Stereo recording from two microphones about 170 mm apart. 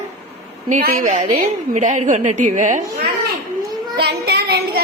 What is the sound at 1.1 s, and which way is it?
A woman's voice, 45° right (ahead or behind).